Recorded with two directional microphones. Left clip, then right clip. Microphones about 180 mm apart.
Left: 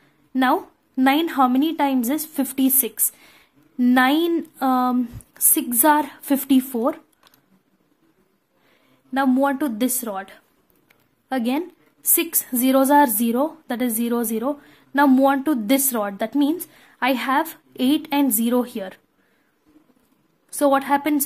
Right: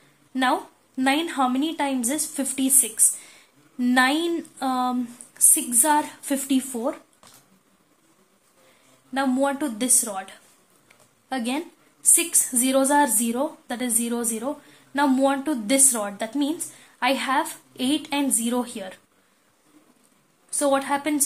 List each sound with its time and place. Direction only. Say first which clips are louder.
0.3 s a woman's voice: left 3 dB; 40° left (ahead or behind)
9.1 s a woman's voice: left 4 dB; 45° left (ahead or behind)
20.5 s a woman's voice: left 4 dB; 45° left (ahead or behind)